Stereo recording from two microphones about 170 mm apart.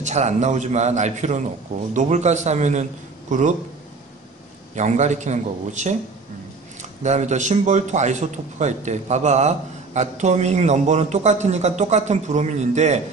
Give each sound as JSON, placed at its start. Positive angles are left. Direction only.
{"t": 0.0, "sound": "a man's voice", "side_deg": -40}
{"t": 4.7, "sound": "a man's voice", "side_deg": -45}